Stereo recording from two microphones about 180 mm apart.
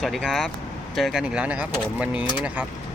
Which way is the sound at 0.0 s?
Centre (ahead or behind).